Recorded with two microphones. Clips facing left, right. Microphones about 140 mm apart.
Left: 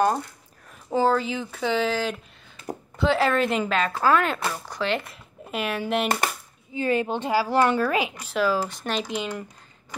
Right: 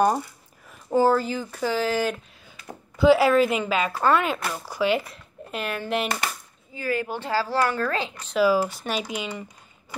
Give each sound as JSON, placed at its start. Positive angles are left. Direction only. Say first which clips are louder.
{"t": 0.0, "sound": "speech", "louder": "right 1 dB", "side_deg": -5}
{"t": 6.7, "sound": "speech", "louder": "left 3 dB", "side_deg": 20}
{"t": 7.8, "sound": "speech", "louder": "left 3 dB", "side_deg": 10}
{"t": 8.4, "sound": "speech", "louder": "right 3 dB", "side_deg": -5}